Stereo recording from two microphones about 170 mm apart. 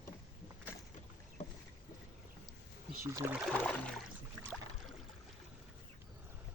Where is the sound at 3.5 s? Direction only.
10° left (ahead or behind).